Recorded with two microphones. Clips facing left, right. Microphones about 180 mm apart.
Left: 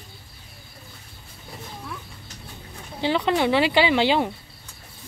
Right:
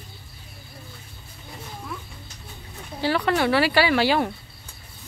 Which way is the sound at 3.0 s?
20° left (ahead or behind).